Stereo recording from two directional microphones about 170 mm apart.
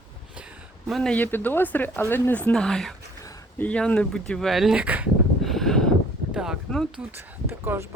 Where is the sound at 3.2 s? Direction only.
15° left (ahead or behind).